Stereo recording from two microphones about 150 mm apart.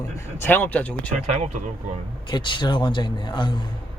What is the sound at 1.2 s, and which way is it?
Speech, 50° right (ahead or behind).